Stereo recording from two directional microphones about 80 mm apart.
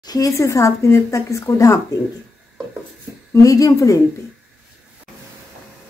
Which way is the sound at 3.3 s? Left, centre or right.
Left.